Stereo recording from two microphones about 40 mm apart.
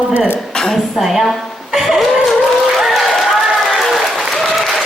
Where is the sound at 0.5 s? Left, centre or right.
Centre.